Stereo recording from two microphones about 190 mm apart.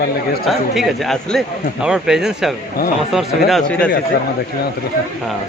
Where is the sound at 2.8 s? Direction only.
50° left (ahead or behind).